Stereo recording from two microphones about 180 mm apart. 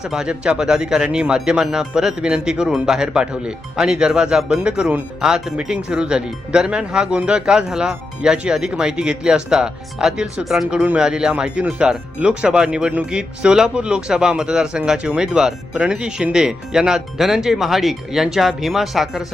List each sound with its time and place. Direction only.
0.0 s speech: 5° right (ahead or behind)